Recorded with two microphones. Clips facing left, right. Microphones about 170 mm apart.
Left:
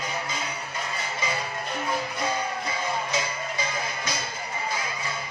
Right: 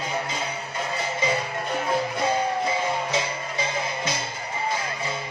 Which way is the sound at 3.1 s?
25° right (ahead or behind).